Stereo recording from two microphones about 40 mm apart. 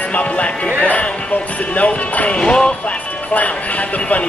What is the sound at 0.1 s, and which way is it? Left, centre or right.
Speech, left.